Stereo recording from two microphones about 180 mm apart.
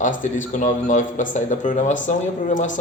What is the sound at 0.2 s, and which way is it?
Speech, 45° left (ahead or behind).